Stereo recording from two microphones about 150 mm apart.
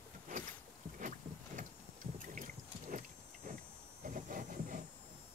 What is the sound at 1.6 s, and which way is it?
Vehicle, 60° right (ahead or behind).